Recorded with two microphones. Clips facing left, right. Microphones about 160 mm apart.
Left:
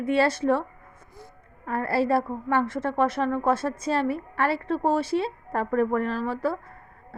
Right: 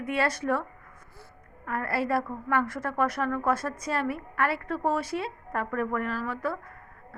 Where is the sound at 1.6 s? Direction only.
30° left (ahead or behind).